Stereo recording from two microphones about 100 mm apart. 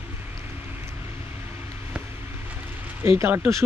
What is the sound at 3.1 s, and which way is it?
Speech, 20° right (ahead or behind).